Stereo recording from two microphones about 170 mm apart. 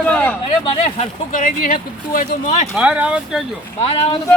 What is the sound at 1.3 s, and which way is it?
Speech, 50° left (ahead or behind).